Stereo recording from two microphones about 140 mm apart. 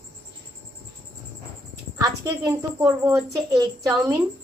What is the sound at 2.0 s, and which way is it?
A woman's voice, 25° right (ahead or behind).